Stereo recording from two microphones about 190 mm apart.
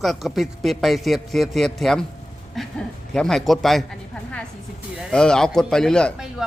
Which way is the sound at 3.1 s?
5° left (ahead or behind).